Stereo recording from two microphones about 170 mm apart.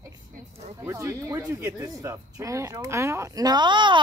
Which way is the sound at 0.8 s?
15° right (ahead or behind).